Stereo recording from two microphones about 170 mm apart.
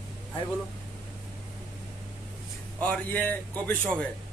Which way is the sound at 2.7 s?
10° left (ahead or behind).